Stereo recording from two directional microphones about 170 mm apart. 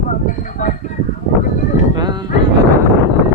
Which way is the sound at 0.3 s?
50° left (ahead or behind).